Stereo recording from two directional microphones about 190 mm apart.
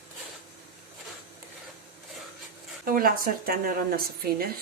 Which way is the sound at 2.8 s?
50° right (ahead or behind).